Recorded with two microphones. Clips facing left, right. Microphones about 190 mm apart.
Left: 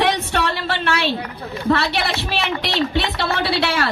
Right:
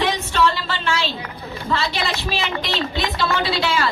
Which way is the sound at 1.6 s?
65° left (ahead or behind).